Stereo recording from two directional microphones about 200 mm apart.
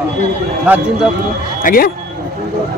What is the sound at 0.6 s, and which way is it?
Speech, 10° right (ahead or behind).